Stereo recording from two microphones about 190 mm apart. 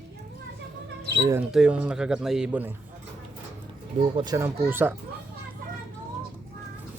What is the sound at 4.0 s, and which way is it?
Speech, 25° right (ahead or behind).